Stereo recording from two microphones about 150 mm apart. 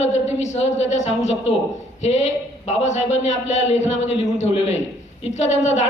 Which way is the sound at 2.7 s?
50° left (ahead or behind).